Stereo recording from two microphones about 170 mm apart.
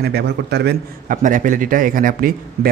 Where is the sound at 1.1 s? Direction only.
50° right (ahead or behind).